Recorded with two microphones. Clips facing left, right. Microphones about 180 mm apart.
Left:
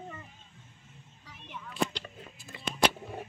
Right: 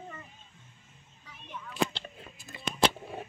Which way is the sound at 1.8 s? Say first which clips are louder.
Right 1 dB; 90° right.